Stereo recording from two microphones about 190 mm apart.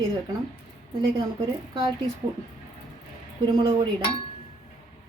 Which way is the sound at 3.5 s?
25° right (ahead or behind).